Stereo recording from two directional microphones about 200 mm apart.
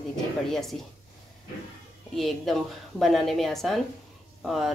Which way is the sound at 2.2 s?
Centre (ahead or behind).